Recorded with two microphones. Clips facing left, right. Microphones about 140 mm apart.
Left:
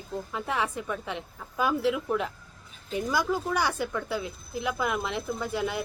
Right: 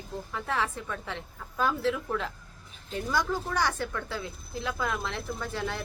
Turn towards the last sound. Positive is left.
turn(degrees=15)  # may be behind; listen again after turning